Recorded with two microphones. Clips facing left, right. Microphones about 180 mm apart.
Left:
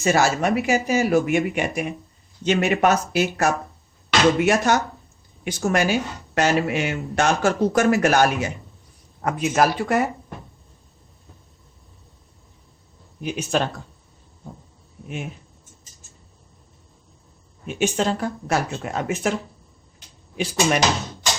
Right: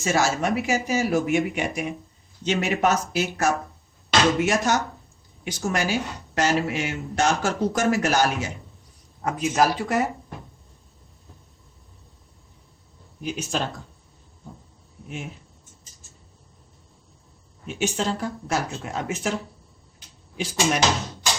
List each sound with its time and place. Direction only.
0.0 s speech: 60° left (ahead or behind)
13.2 s speech: 60° left (ahead or behind)
17.7 s speech: 55° left (ahead or behind)
20.3 s speech: 60° left (ahead or behind)